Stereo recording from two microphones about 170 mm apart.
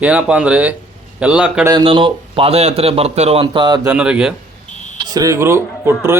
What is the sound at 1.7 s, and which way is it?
A man's voice, 30° right (ahead or behind).